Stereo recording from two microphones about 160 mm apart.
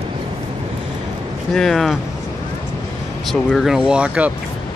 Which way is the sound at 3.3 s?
Centre (ahead or behind).